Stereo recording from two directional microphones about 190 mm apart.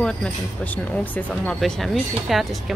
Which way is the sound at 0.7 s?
5° left (ahead or behind).